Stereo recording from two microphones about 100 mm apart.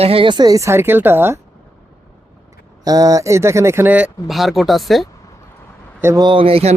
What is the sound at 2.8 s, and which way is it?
Speech, 35° right (ahead or behind).